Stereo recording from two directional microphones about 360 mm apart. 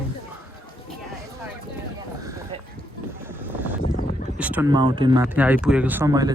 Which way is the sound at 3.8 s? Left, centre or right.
Left.